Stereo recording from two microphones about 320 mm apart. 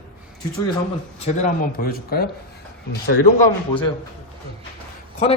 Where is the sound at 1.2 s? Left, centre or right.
Left.